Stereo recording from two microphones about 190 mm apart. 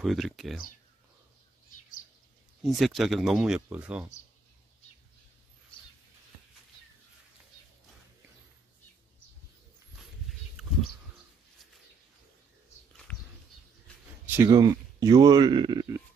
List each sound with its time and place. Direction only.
0.0 s speech: centre (ahead or behind)
2.6 s speech: centre (ahead or behind)
13.1 s a sound: 5° left (ahead or behind)
14.3 s speech: 15° right (ahead or behind)